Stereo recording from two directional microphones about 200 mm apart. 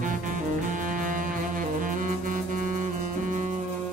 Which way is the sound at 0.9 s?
40° right (ahead or behind).